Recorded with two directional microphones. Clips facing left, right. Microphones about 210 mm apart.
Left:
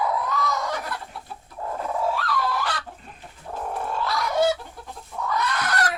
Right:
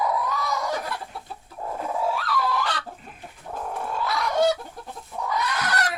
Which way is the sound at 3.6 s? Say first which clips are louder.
Left 1 dB; centre (ahead or behind).